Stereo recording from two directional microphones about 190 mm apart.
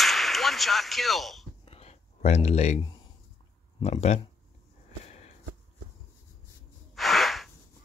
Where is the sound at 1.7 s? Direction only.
35° left (ahead or behind).